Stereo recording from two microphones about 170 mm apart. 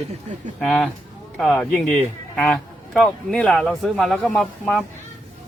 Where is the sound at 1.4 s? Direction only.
10° left (ahead or behind).